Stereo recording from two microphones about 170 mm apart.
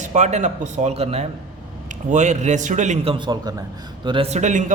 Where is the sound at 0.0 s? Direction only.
45° right (ahead or behind).